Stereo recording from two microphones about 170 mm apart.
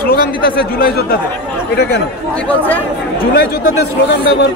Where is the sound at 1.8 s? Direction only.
75° left (ahead or behind).